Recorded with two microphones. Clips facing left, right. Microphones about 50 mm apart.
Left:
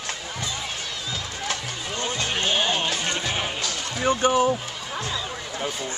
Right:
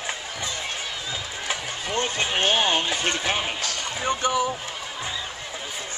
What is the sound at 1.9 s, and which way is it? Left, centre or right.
Music, right.